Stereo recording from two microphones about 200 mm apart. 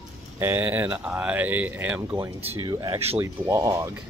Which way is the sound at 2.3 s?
25° right (ahead or behind).